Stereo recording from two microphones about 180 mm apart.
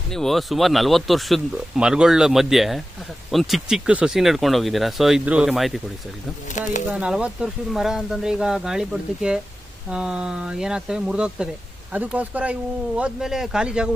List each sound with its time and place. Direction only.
0.1 s speech: centre (ahead or behind)
6.5 s speech: 45° left (ahead or behind)
6.9 s speech: 5° right (ahead or behind)